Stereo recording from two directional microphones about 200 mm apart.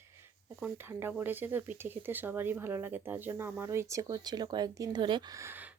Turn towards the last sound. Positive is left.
turn(degrees=-10)  # may be behind; listen again after turning